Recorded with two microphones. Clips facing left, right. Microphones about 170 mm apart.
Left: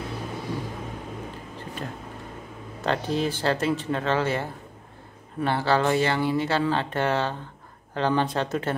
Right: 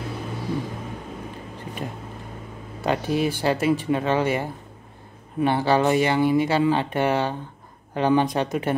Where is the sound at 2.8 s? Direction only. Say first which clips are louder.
Right 3 dB; 10° right (ahead or behind).